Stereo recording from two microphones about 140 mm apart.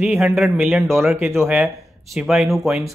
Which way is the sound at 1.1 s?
15° right (ahead or behind).